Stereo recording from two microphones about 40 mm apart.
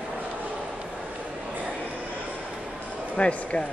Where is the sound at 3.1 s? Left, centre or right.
Left.